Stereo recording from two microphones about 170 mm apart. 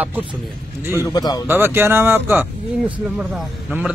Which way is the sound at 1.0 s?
25° left (ahead or behind).